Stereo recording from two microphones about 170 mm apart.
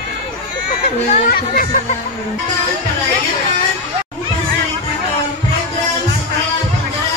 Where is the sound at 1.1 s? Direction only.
50° left (ahead or behind).